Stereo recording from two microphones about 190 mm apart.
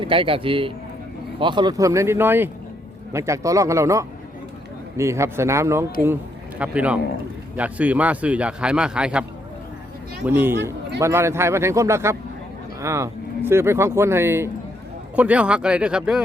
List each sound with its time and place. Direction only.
0.0 s a man's voice: 25° right (ahead or behind); by 9.2 s 5° right (ahead or behind)
10.2 s a man's voice: 10° right (ahead or behind)